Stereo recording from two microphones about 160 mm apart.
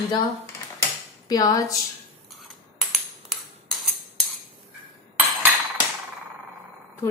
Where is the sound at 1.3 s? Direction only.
20° left (ahead or behind).